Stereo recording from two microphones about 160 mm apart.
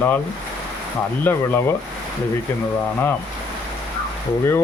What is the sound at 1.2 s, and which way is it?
Speech, 10° left (ahead or behind).